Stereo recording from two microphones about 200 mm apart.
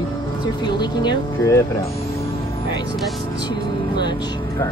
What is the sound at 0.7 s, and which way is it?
Speech, 20° left (ahead or behind).